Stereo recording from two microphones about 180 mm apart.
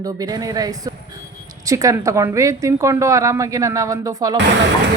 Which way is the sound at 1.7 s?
20° right (ahead or behind).